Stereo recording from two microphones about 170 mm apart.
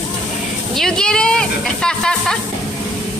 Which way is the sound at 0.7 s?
5° left (ahead or behind).